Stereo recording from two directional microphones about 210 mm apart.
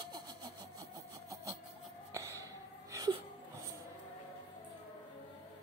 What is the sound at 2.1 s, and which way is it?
Wheeze, 15° right (ahead or behind).